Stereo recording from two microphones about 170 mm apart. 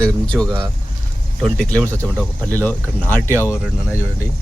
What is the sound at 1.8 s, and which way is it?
Speech, 15° right (ahead or behind).